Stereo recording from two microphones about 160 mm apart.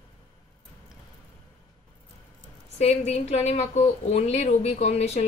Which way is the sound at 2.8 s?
40° left (ahead or behind).